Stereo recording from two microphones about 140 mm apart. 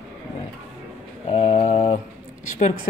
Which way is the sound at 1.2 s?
50° left (ahead or behind).